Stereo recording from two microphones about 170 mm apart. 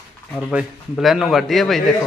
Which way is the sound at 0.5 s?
Centre (ahead or behind).